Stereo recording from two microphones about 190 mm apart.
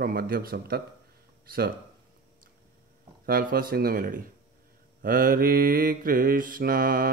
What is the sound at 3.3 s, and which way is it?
Mantra, 50° right (ahead or behind).